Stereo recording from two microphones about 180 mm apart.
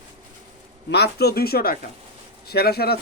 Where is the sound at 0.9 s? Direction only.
65° left (ahead or behind).